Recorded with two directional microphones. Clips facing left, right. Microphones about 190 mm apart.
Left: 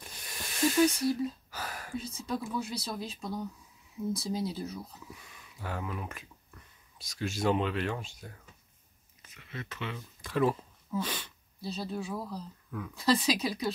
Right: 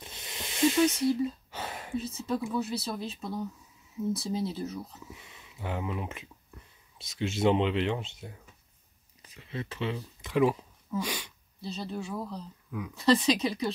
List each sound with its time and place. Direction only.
0.0 s hiss: 25° right (ahead or behind)
0.9 s a sound: 25° right (ahead or behind)
2.0 s speech: 5° right (ahead or behind)
5.1 s speech: 25° right (ahead or behind)
10.2 s speech: 15° right (ahead or behind)
11.6 s speech: 5° left (ahead or behind)